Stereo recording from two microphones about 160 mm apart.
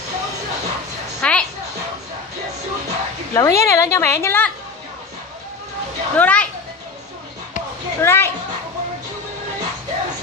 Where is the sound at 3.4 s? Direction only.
20° left (ahead or behind).